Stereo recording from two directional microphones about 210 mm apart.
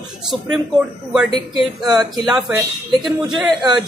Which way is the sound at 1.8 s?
20° right (ahead or behind).